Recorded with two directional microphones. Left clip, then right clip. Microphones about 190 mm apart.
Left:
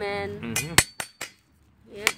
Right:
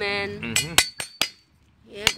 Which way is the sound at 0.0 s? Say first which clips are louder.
Right 3 dB; 20° right (ahead or behind).